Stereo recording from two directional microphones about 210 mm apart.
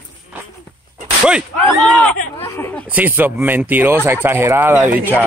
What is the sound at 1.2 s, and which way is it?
Speech, centre (ahead or behind).